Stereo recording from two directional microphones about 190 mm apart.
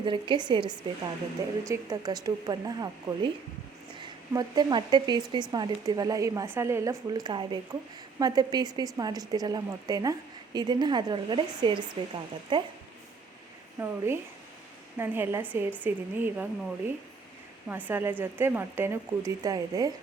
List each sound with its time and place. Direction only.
0.0 s a woman's voice: 25° right (ahead or behind)
13.7 s a woman's voice: 10° right (ahead or behind)